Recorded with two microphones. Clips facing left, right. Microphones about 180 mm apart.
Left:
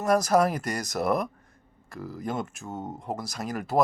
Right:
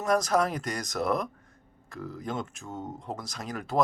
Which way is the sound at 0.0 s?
5° left (ahead or behind).